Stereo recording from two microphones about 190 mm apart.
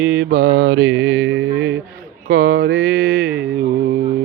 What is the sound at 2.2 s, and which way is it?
Mantra, 50° right (ahead or behind).